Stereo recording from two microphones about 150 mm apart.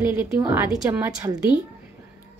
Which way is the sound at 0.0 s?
15° right (ahead or behind).